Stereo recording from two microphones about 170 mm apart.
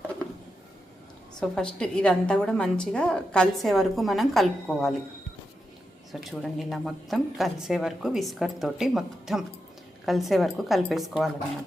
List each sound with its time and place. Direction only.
1.4 s a woman's voice: 5° left (ahead or behind)
6.1 s a woman's voice: centre (ahead or behind)